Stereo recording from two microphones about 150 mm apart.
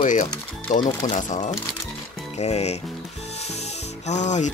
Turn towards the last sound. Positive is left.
turn(degrees=50)  # may be behind; listen again after turning